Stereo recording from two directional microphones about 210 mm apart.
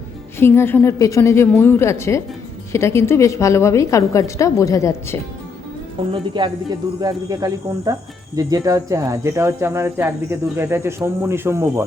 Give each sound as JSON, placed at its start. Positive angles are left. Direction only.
{"t": 0.3, "sound": "a woman's voice", "side_deg": 10}
{"t": 6.1, "sound": "speech", "side_deg": -25}